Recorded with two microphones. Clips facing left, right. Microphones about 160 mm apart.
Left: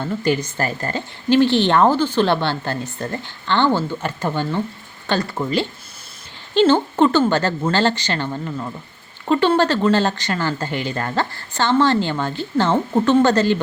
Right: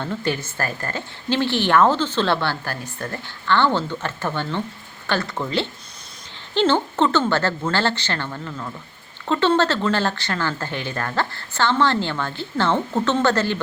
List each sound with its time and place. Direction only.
0.0 s speech: 10° left (ahead or behind)